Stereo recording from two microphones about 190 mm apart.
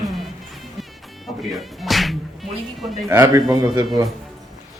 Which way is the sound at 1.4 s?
Centre (ahead or behind).